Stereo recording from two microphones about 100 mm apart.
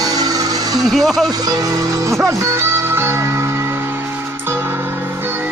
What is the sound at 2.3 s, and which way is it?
Music, 25° right (ahead or behind).